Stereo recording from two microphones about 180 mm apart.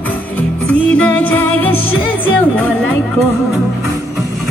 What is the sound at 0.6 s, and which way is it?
Music, 5° left (ahead or behind).